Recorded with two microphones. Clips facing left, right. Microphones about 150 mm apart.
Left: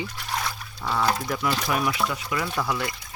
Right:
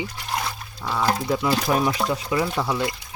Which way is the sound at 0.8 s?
5° right (ahead or behind).